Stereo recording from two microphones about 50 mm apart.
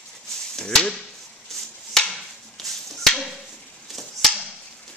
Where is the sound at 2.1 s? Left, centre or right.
Centre.